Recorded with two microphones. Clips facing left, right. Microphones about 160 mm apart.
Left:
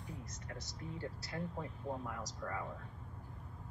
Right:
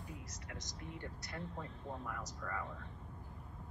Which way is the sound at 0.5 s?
35° left (ahead or behind).